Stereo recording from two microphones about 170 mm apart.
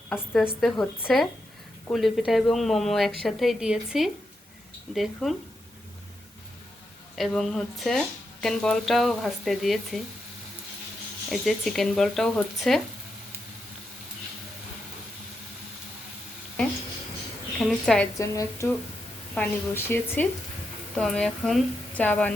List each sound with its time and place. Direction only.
0.6 s speech: 5° left (ahead or behind)
7.2 s speech: centre (ahead or behind)
11.3 s speech: centre (ahead or behind)
17.7 s speech: 5° left (ahead or behind)
18.2 s speech: 20° left (ahead or behind)